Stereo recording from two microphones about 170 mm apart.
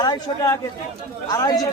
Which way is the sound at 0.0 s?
20° left (ahead or behind).